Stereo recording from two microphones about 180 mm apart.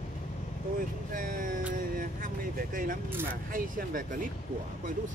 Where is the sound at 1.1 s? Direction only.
50° right (ahead or behind).